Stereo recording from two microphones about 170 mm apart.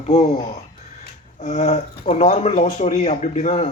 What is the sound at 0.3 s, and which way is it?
Speech, 25° left (ahead or behind).